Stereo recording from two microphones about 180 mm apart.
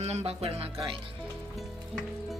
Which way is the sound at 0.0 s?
35° right (ahead or behind).